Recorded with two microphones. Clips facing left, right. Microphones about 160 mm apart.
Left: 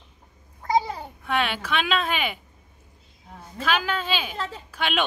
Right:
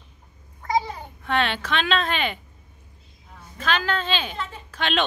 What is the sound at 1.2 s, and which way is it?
A woman's voice, 10° left (ahead or behind).